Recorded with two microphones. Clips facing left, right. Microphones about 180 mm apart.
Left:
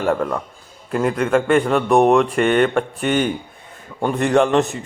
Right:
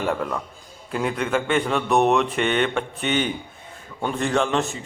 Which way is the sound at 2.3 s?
50° left (ahead or behind).